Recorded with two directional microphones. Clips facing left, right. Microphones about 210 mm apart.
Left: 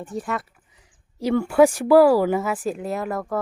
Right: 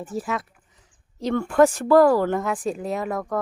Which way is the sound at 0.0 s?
Centre (ahead or behind).